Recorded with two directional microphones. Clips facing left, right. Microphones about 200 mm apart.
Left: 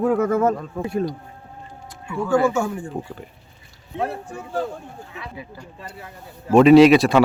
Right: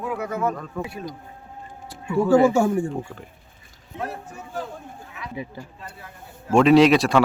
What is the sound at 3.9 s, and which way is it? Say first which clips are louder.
Speech: left 5 dB; 30° left (ahead or behind).